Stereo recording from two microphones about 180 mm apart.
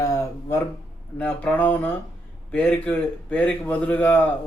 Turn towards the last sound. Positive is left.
turn(degrees=10)  # may be behind; listen again after turning